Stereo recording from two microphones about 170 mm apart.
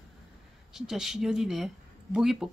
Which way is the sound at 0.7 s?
5° right (ahead or behind).